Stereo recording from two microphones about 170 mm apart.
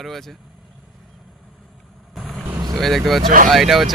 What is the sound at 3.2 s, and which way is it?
Speech, 55° right (ahead or behind).